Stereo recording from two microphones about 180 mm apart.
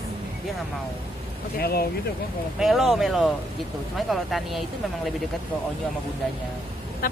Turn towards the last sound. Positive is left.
turn(degrees=50)  # may be behind; listen again after turning